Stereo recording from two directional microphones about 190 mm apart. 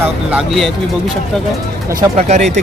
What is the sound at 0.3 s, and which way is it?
Speech, 5° right (ahead or behind).